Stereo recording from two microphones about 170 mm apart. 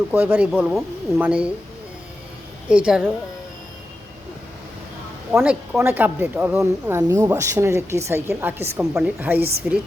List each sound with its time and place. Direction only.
0.1 s speech: 10° right (ahead or behind)
2.6 s a woman's voice: 5° right (ahead or behind)
5.3 s speech: 5° right (ahead or behind)
9.4 s a woman's voice: 65° right (ahead or behind)